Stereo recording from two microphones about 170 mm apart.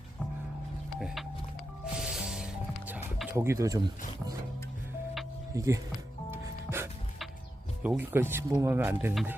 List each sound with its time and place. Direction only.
0.9 s music: centre (ahead or behind); by 3.8 s 15° right (ahead or behind)
5.5 s speech: 20° right (ahead or behind)
6.3 s music: 15° right (ahead or behind)
7.8 s speech: 10° right (ahead or behind)